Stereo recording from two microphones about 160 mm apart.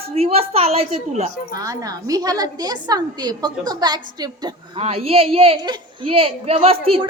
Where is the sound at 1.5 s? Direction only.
20° right (ahead or behind).